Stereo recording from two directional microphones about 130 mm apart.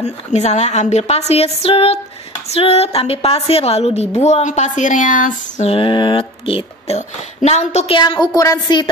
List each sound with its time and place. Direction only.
0.0 s a woman's voice: 60° left (ahead or behind); by 5.7 s 80° left
5.7 s speech: 40° left (ahead or behind)
7.0 s a woman's voice: 60° left (ahead or behind)
7.9 s a woman's voice: 35° left (ahead or behind)